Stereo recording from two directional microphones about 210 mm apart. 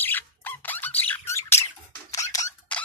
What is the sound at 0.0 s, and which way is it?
Squeak, 10° left (ahead or behind).